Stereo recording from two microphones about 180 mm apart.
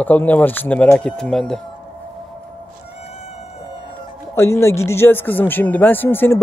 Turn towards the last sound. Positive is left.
turn(degrees=10)  # may be behind; listen again after turning